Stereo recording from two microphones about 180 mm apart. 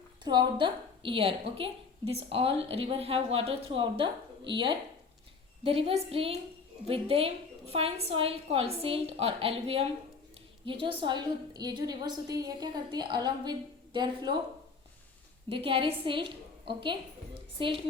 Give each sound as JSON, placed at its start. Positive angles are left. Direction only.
{"t": 0.3, "sound": "a woman's voice", "side_deg": -25}
{"t": 15.4, "sound": "a woman's voice", "side_deg": -30}